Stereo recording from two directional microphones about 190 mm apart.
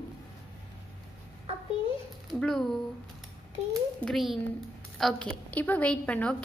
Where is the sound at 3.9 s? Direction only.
Centre (ahead or behind).